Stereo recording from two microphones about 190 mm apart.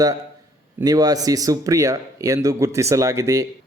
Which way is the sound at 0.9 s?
20° right (ahead or behind).